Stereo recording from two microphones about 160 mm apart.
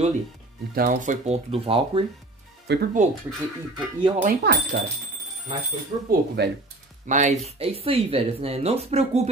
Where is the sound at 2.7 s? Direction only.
90° right.